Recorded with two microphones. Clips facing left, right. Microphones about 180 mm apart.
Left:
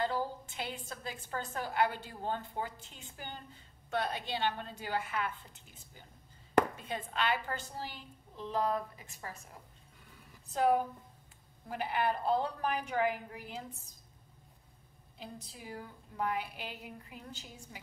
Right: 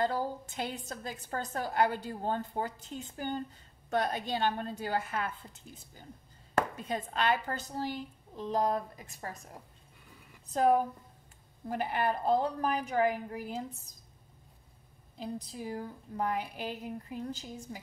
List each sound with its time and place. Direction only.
0.0 s a woman's voice: 45° right (ahead or behind)
6.9 s a woman's voice: 40° right (ahead or behind)
10.5 s a woman's voice: 45° right (ahead or behind)
15.5 s a woman's voice: 40° right (ahead or behind)